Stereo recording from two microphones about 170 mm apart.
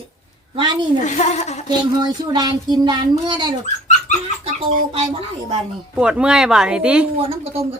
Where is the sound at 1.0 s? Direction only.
45° left (ahead or behind).